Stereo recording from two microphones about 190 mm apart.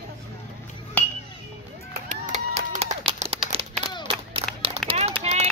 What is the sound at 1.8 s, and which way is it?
Run, 45° right (ahead or behind).